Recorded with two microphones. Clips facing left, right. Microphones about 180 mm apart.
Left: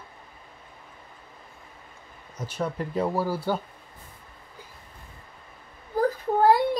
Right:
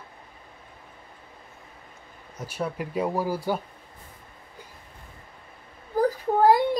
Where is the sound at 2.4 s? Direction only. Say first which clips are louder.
Left 1 dB; 10° right (ahead or behind).